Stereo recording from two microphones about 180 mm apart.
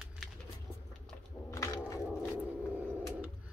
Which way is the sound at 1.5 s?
15° left (ahead or behind).